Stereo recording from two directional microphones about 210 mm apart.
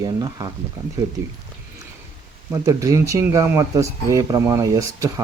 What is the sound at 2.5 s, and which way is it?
Speech, 15° right (ahead or behind).